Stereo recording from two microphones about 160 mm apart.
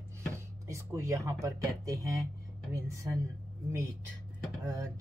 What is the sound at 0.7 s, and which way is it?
Speech, 20° right (ahead or behind).